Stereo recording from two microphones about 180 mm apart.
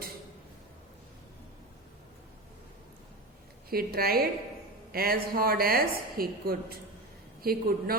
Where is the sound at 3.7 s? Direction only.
55° right (ahead or behind).